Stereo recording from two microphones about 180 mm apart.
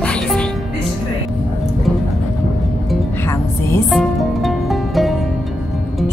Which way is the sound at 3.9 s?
Centre (ahead or behind).